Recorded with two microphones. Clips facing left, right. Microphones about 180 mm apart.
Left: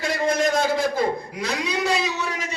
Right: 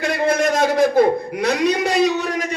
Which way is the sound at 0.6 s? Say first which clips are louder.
Right 7 dB; 60° right (ahead or behind).